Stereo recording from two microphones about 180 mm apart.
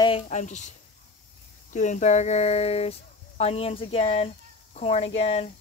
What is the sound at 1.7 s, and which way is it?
Speech, 45° left (ahead or behind).